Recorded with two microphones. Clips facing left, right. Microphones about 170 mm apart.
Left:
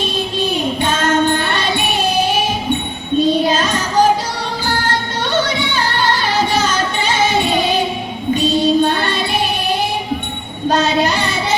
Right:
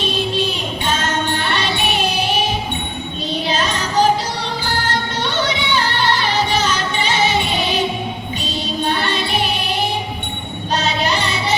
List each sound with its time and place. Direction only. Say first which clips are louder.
0.3 s music: left 4 dB; 50° left (ahead or behind)
3.4 s child singing: left 4 dB; 45° left (ahead or behind)
4.9 s music: left 2 dB; 50° left (ahead or behind)
8.4 s music: left 12 dB; 50° left (ahead or behind)
10.7 s child singing: left 6 dB; 50° left (ahead or behind)